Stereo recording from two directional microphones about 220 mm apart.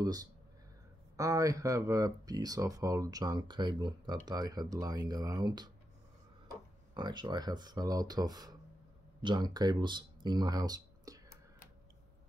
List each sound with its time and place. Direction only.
0.0 s speech: 15° right (ahead or behind)
6.9 s speech: 20° right (ahead or behind)